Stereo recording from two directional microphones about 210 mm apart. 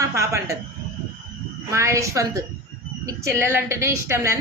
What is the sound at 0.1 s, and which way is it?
Speech, 15° right (ahead or behind).